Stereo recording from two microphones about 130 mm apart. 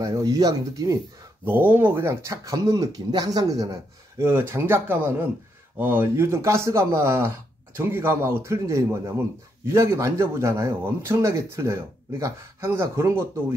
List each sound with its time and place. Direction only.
0.0 s a man's voice: 30° right (ahead or behind)
1.4 s a man's voice: 15° right (ahead or behind)